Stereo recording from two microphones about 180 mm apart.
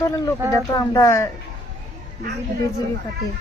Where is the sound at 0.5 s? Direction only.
20° left (ahead or behind).